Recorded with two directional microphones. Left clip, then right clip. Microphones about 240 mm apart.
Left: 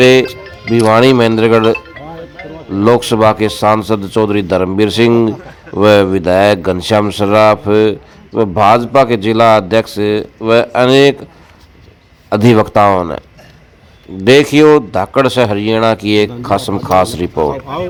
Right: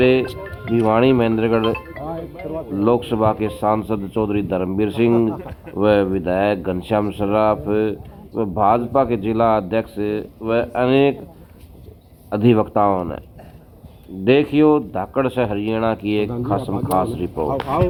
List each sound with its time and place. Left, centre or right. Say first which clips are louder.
0.0 s a man's voice: left 9 dB; left
2.7 s a man's voice: left 8 dB; left
12.3 s a man's voice: left 7 dB; left
14.3 s a man's voice: left 8 dB; left
17.5 s speech: even; left